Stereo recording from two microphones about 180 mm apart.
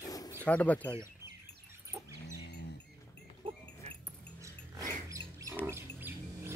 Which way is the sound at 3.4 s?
30° right (ahead or behind).